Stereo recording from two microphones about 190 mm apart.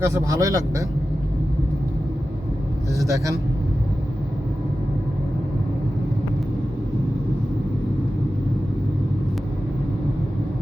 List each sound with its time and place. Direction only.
0.0 s a man's voice: 15° right (ahead or behind)
3.0 s a man's voice: 15° right (ahead or behind)